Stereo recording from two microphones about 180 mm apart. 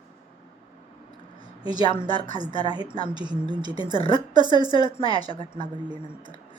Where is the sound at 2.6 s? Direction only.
25° right (ahead or behind).